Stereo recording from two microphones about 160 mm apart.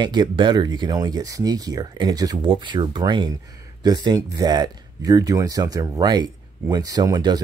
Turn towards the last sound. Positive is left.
turn(degrees=-25)  # may be behind; listen again after turning